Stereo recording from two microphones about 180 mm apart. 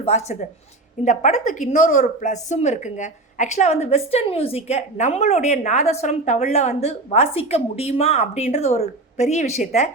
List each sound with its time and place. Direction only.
0.0 s a woman's voice: 35° left (ahead or behind)